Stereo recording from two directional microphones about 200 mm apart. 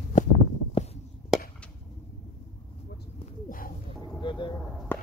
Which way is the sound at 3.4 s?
45° left (ahead or behind).